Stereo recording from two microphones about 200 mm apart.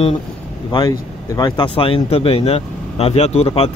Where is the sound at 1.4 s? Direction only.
20° left (ahead or behind).